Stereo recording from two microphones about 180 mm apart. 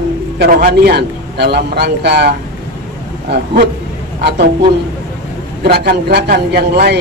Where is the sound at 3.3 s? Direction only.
60° right (ahead or behind).